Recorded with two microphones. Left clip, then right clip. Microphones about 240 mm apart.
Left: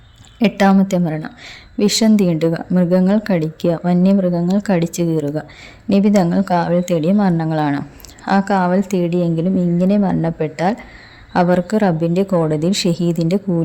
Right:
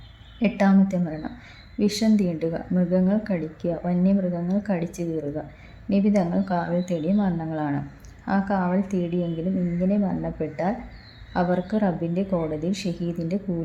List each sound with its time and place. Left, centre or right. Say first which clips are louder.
0.3 s speech: left 8 dB; left